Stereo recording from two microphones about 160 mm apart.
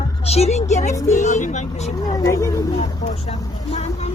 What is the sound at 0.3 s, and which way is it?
A woman's voice, 40° left (ahead or behind).